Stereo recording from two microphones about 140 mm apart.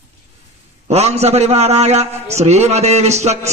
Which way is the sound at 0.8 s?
50° right (ahead or behind).